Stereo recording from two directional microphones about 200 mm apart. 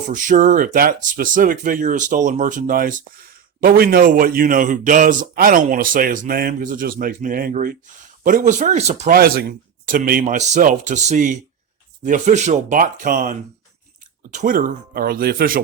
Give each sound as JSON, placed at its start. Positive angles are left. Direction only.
{"t": 0.1, "sound": "speech", "side_deg": -40}
{"t": 9.1, "sound": "speech", "side_deg": -50}